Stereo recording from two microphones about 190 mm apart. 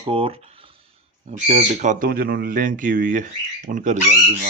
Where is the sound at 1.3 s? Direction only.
35° right (ahead or behind).